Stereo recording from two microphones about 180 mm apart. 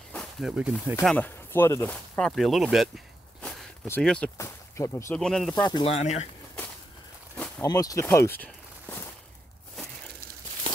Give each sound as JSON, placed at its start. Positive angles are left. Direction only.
{"t": 0.1, "sound": "speech", "side_deg": 0}
{"t": 1.0, "sound": "speech", "side_deg": 10}
{"t": 3.3, "sound": "a sound", "side_deg": 5}
{"t": 4.4, "sound": "speech", "side_deg": 15}
{"t": 5.2, "sound": "speech", "side_deg": 5}
{"t": 5.6, "sound": "speech", "side_deg": 25}
{"t": 7.3, "sound": "a sound", "side_deg": 5}
{"t": 7.6, "sound": "speech", "side_deg": 20}